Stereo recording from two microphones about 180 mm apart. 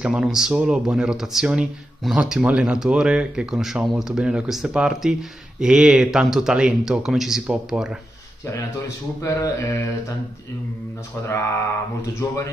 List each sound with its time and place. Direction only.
0.0 s speech: 5° right (ahead or behind)
8.5 s speech: 15° left (ahead or behind)
12.0 s speech: 15° left (ahead or behind)